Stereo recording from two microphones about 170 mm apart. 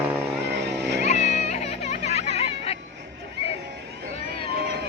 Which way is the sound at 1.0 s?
40° left (ahead or behind).